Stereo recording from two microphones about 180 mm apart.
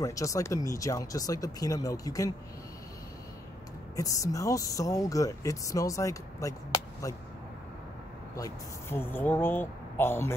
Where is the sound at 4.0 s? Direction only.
20° left (ahead or behind).